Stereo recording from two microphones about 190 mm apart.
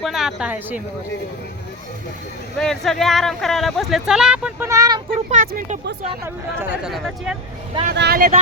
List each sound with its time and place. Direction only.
0.0 s speech: centre (ahead or behind)
2.6 s speech: centre (ahead or behind); by 5.1 s 25° right (ahead or behind)
5.3 s speech: 45° right (ahead or behind)
6.2 s speech: 10° right (ahead or behind)
7.9 s speech: 55° right (ahead or behind)